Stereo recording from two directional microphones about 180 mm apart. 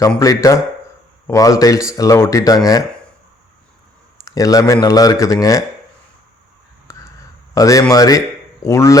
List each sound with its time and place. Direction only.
0.2 s speech: 20° left (ahead or behind)
4.3 s speech: 20° left (ahead or behind)
6.9 s a sound: 15° left (ahead or behind)
7.5 s speech: 20° left (ahead or behind)